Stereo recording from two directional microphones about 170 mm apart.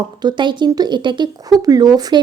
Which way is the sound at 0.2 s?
25° right (ahead or behind).